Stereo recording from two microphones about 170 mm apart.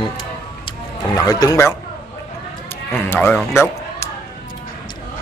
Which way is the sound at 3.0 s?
15° left (ahead or behind).